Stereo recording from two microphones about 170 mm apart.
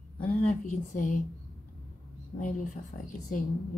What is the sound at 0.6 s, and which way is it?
Speech, 50° left (ahead or behind).